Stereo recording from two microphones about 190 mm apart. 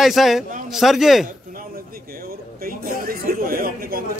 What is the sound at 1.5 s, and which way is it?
A man's voice, 50° right (ahead or behind).